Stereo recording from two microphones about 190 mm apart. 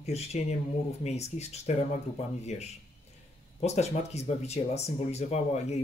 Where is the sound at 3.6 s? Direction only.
35° left (ahead or behind).